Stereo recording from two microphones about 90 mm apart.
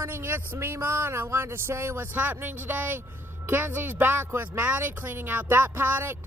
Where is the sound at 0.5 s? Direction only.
25° right (ahead or behind).